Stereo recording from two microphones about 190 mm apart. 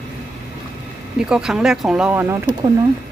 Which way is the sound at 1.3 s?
5° right (ahead or behind).